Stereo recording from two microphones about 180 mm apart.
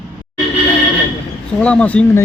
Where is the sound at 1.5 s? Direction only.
5° left (ahead or behind).